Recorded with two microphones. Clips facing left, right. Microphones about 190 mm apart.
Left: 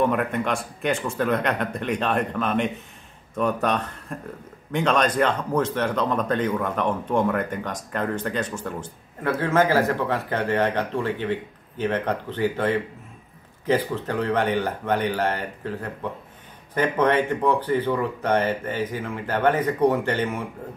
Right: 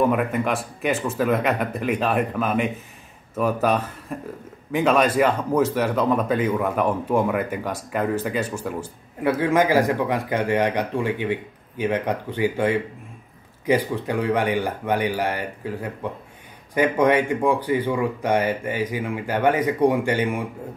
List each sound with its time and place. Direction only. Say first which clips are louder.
0.0 s speech: right 2 dB; 5° right (ahead or behind)